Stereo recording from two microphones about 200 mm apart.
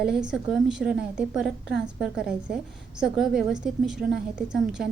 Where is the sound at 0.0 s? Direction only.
5° right (ahead or behind).